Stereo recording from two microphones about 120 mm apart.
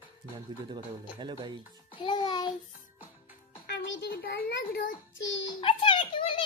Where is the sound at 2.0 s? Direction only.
40° left (ahead or behind).